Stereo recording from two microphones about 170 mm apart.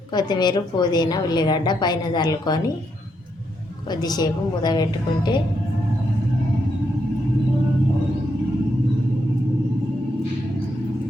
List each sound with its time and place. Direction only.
0.1 s a woman's voice: 25° left (ahead or behind)
4.0 s a woman's voice: 25° left (ahead or behind)